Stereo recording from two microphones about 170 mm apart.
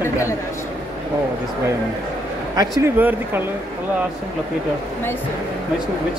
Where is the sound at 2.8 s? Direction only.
10° right (ahead or behind).